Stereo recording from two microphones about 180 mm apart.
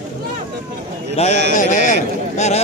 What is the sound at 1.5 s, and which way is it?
A man's voice, 45° left (ahead or behind).